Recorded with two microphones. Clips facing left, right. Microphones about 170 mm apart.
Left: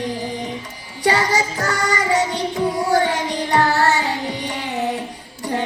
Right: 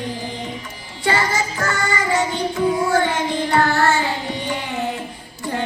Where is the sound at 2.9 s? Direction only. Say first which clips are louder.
Left 1 dB; 35° left (ahead or behind).